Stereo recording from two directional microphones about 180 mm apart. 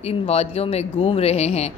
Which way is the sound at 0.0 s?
35° left (ahead or behind).